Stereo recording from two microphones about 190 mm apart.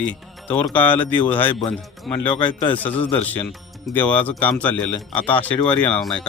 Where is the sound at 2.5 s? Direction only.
25° left (ahead or behind).